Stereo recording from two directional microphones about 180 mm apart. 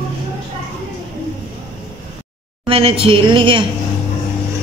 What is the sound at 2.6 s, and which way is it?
Speech, 30° right (ahead or behind).